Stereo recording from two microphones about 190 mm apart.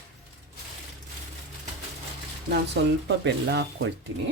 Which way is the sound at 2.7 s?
65° right (ahead or behind).